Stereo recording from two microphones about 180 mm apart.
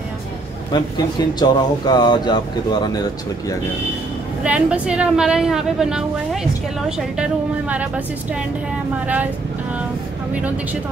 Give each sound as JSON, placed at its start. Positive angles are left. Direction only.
{"t": 0.7, "sound": "speech", "side_deg": 25}
{"t": 4.4, "sound": "a woman's voice", "side_deg": -5}
{"t": 10.3, "sound": "a woman's voice", "side_deg": -10}